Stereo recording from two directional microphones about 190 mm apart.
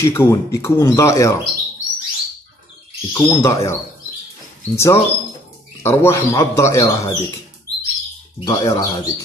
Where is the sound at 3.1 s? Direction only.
15° left (ahead or behind).